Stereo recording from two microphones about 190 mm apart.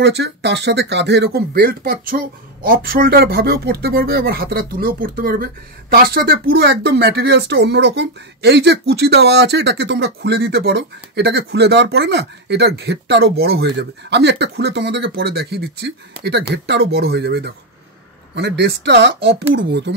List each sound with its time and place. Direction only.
0.0 s a man's voice: 65° right (ahead or behind)